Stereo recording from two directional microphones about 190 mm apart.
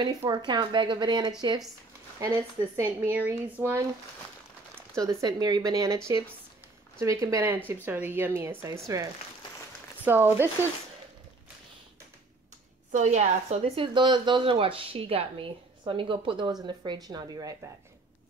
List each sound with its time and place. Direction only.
0.0 s a woman's voice: 20° right (ahead or behind)
12.9 s a woman's voice: 35° right (ahead or behind); by 17.6 s 20° right (ahead or behind)